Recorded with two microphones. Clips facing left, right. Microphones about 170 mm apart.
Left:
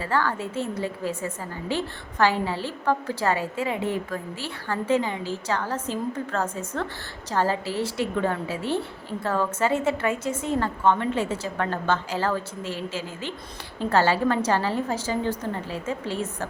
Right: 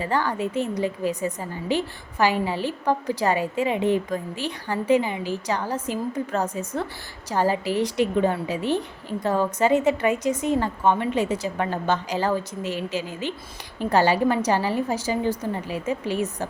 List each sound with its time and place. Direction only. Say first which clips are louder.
0.0 s a woman's voice: right 2 dB; 15° right (ahead or behind)